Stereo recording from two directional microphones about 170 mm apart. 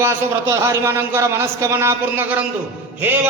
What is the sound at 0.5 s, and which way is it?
A man's voice, 15° right (ahead or behind).